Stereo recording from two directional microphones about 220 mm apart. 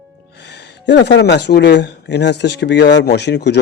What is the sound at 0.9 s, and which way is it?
Speech, 50° left (ahead or behind).